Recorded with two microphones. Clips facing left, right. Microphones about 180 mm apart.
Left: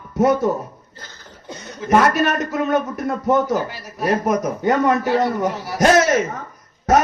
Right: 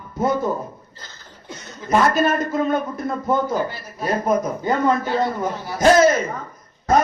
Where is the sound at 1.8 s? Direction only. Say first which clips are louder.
Left 2 dB; 80° left.